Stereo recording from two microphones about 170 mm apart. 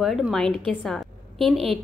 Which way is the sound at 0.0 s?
Centre (ahead or behind).